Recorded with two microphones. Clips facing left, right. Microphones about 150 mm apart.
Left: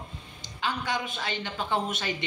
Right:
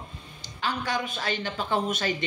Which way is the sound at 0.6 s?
20° left (ahead or behind).